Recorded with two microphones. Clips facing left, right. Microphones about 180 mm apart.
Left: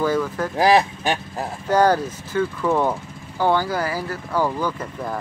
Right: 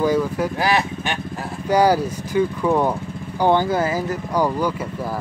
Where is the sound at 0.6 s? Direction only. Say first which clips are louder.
Left 8 dB; 35° left (ahead or behind).